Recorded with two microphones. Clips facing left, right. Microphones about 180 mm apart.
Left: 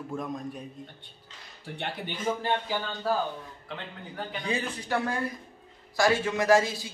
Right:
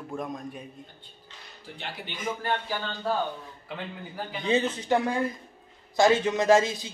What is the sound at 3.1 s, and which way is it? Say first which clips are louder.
A man's voice: even; 5° left (ahead or behind).